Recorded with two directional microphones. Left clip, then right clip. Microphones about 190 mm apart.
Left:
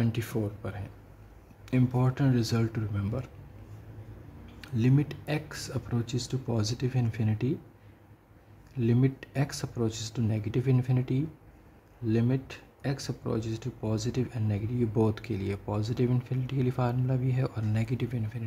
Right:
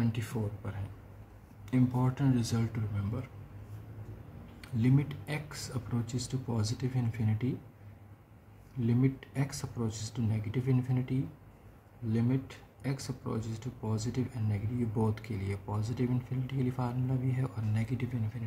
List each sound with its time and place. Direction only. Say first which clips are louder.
0.0 s speech: left 4 dB; 35° left (ahead or behind)
4.7 s speech: left 3 dB; 30° left (ahead or behind)
8.8 s speech: left 4 dB; 30° left (ahead or behind)